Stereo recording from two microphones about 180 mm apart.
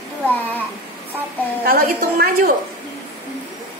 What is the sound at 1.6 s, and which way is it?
Speech, 55° right (ahead or behind).